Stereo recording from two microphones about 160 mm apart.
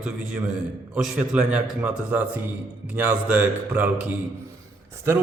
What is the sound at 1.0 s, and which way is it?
Mantra, 5° right (ahead or behind).